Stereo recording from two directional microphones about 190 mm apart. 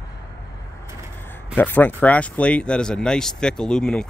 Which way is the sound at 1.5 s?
10° left (ahead or behind).